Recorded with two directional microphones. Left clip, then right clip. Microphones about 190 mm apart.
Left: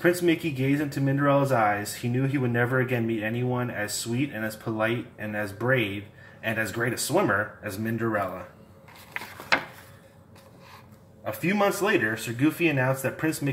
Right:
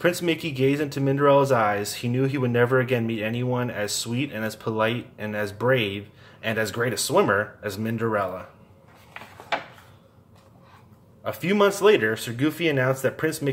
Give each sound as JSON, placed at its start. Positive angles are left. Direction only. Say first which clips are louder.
{"t": 0.0, "sound": "speech", "louder": "even", "side_deg": -45}
{"t": 11.2, "sound": "speech", "louder": "right 3 dB", "side_deg": -35}